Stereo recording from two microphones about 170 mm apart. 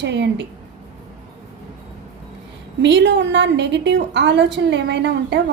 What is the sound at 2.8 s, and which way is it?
A woman's voice, 90° right.